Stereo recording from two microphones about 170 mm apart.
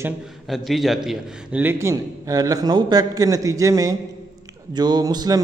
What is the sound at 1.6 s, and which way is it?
Speech, 15° right (ahead or behind).